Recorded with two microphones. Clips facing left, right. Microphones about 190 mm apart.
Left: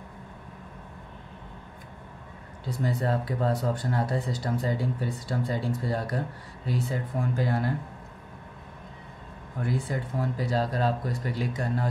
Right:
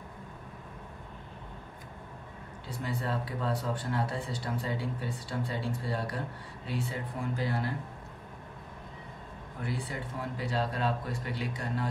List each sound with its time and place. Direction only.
2.8 s speech: 40° left (ahead or behind)
9.7 s speech: 45° left (ahead or behind)